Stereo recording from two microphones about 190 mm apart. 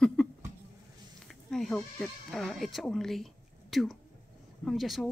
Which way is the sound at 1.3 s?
Centre (ahead or behind).